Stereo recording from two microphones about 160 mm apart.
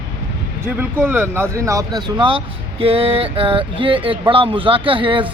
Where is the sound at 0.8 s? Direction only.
15° right (ahead or behind).